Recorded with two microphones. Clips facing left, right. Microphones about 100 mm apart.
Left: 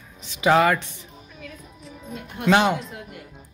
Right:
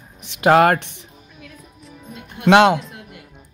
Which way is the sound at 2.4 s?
85° right.